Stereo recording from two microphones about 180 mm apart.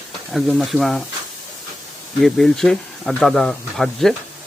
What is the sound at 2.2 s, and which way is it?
Speech, centre (ahead or behind).